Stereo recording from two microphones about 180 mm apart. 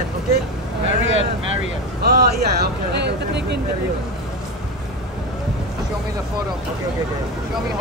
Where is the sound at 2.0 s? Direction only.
60° right (ahead or behind).